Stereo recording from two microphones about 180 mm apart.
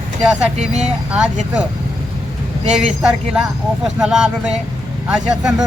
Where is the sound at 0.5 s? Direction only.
40° right (ahead or behind).